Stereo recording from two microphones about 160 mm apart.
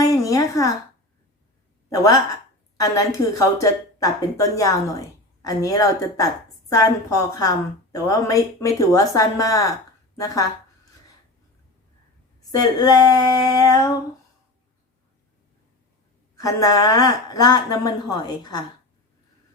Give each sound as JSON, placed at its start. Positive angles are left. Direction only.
{"t": 0.0, "sound": "a sound", "side_deg": 20}
{"t": 1.9, "sound": "a woman's voice", "side_deg": 20}
{"t": 12.5, "sound": "a woman's voice", "side_deg": 25}
{"t": 16.3, "sound": "a woman's voice", "side_deg": 20}